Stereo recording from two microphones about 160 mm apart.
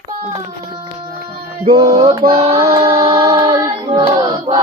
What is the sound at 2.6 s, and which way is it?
Music, 25° right (ahead or behind).